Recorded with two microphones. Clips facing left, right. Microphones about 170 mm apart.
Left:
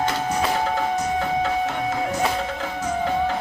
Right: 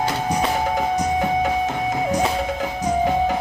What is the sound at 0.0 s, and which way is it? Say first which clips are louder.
Music: right 1 dB; 15° right (ahead or behind).